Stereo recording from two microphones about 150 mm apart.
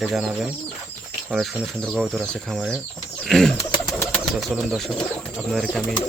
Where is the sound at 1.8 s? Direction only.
5° left (ahead or behind).